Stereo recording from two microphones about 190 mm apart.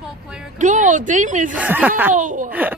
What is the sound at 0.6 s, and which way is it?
Speech, 40° right (ahead or behind).